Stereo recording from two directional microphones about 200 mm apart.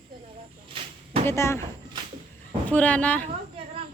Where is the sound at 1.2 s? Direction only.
15° left (ahead or behind).